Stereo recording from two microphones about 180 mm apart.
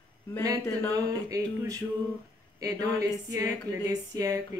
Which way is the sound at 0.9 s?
20° right (ahead or behind).